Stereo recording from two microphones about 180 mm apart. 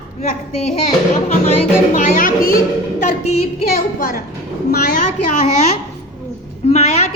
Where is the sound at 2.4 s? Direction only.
50° left (ahead or behind).